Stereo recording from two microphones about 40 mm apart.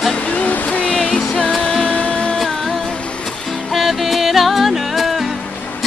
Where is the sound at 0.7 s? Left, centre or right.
Left.